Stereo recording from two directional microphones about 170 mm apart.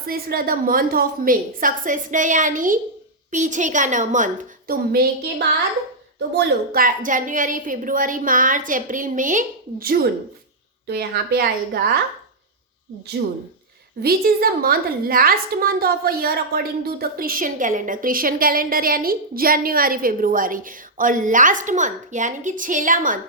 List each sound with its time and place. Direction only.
0.0 s a woman's voice: 60° right (ahead or behind)
6.1 s a woman's voice: 80° right; by 11.8 s 65° right (ahead or behind)
14.0 s a woman's voice: 65° right (ahead or behind)